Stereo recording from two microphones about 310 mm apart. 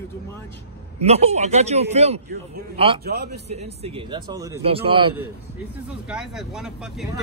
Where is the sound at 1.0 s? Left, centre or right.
Centre.